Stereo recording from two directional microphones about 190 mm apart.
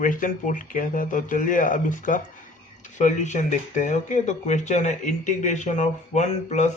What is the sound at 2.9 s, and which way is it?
Speech, 40° left (ahead or behind).